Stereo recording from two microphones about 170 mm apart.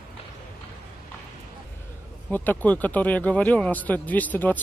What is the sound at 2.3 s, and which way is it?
Speech, 10° left (ahead or behind).